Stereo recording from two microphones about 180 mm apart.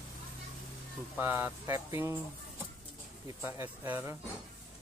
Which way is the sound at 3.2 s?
15° right (ahead or behind).